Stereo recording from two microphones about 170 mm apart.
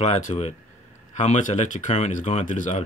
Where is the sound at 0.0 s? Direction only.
40° left (ahead or behind).